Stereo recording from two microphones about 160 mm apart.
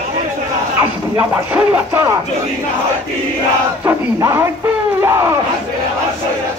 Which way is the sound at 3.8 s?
20° right (ahead or behind).